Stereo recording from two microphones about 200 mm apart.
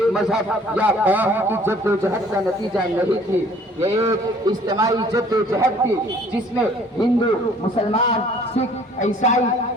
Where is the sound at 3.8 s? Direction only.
15° right (ahead or behind).